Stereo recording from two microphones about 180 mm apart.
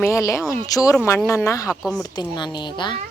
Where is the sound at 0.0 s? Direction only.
15° left (ahead or behind).